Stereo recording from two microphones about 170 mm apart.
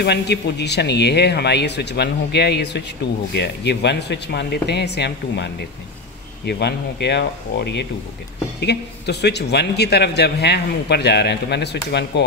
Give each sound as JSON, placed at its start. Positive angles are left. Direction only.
{"t": 0.0, "sound": "a man's voice", "side_deg": 75}